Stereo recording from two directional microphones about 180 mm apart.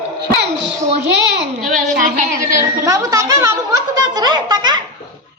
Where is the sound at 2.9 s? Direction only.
20° right (ahead or behind).